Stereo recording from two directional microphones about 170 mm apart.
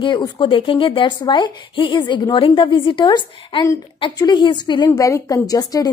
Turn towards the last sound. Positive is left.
turn(degrees=20)  # may be behind; listen again after turning